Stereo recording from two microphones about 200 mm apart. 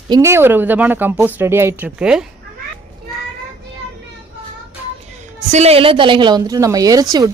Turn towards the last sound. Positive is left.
turn(degrees=-20)  # may be behind; listen again after turning